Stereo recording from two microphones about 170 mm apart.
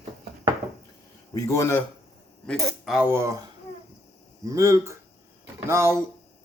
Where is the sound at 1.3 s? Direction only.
20° left (ahead or behind).